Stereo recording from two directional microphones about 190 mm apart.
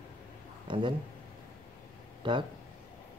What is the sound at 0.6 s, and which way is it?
Speech, 25° right (ahead or behind).